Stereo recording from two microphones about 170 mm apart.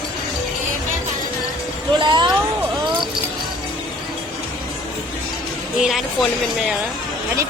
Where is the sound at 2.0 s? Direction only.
25° right (ahead or behind).